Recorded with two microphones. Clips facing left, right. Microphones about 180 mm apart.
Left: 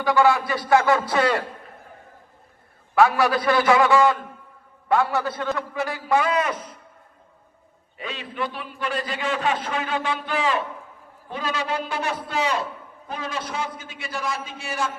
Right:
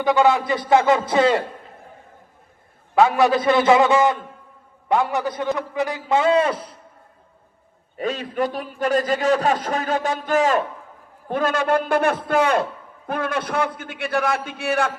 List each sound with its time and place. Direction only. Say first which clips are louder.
0.0 s a man's voice: right 2 dB; 20° right (ahead or behind)
2.9 s a man's voice: right 2 dB; 20° right (ahead or behind)
7.9 s a man's voice: right 7 dB; 45° right (ahead or behind); by 14.9 s 60° right (ahead or behind)